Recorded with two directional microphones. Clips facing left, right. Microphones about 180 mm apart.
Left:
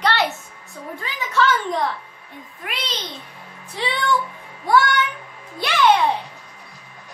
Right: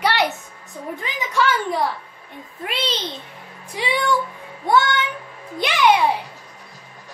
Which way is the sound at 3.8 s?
10° right (ahead or behind).